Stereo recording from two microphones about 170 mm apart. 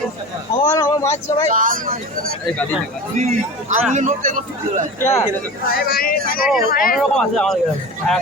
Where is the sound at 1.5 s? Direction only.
50° right (ahead or behind).